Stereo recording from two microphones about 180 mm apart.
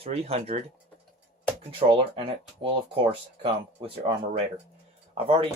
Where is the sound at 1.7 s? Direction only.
30° right (ahead or behind).